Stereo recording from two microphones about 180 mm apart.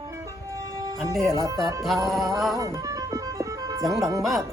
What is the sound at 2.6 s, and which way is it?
Music, 15° right (ahead or behind).